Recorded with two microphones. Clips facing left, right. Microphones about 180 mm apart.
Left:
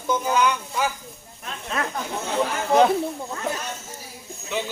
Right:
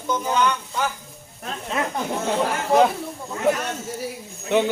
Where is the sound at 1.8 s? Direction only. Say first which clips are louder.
Right 2 dB; 20° right (ahead or behind).